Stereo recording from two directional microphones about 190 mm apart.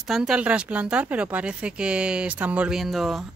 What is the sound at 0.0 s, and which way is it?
Speech, 5° right (ahead or behind).